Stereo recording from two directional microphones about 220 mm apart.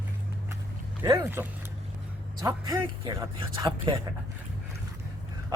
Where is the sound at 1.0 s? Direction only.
15° right (ahead or behind).